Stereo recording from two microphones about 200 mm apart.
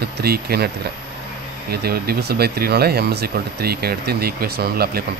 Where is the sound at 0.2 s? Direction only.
50° right (ahead or behind).